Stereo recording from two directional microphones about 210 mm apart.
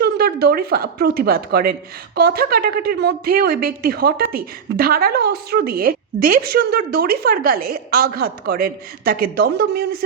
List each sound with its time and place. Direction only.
0.0 s speech: 50° right (ahead or behind)